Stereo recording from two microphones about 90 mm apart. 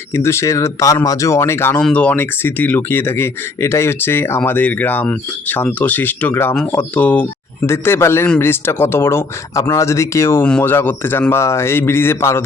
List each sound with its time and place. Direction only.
0.1 s speech: 30° left (ahead or behind)
1.8 s speech: 15° left (ahead or behind)
7.6 s speech: 25° left (ahead or behind)